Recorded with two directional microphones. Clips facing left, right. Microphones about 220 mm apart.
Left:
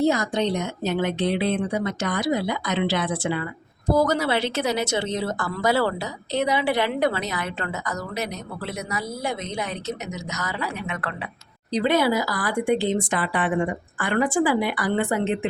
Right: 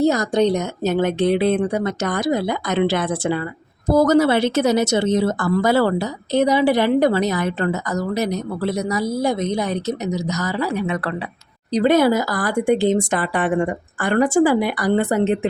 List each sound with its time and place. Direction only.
0.0 s a woman's voice: 40° right (ahead or behind)